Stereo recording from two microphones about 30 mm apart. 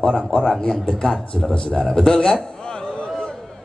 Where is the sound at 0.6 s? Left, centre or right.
Left.